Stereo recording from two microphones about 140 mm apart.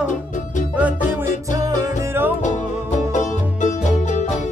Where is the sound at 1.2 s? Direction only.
55° left (ahead or behind).